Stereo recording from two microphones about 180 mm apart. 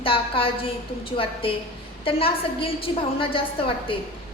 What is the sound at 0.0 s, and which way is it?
A woman's voice, 30° left (ahead or behind).